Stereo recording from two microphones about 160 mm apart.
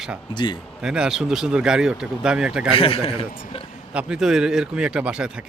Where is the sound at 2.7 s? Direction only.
35° left (ahead or behind).